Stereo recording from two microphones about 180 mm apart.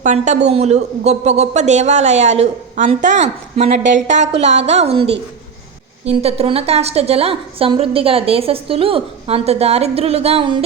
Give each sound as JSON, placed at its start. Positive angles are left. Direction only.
{"t": 0.0, "sound": "a woman's voice", "side_deg": -40}